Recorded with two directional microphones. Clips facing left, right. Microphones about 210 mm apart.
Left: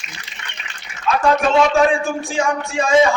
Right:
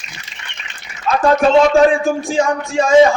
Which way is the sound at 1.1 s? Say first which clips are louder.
Right 2 dB; 40° right (ahead or behind).